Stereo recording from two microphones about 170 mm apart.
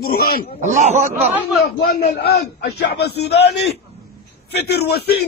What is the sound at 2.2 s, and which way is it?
A man's voice, 75° left (ahead or behind).